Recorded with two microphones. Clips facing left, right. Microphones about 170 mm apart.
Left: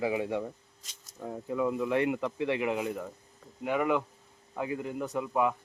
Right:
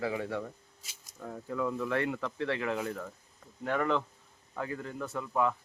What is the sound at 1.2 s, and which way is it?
Speech, 15° left (ahead or behind).